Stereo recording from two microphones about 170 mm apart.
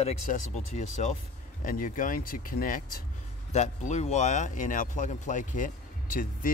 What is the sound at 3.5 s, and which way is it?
Speech, 40° left (ahead or behind).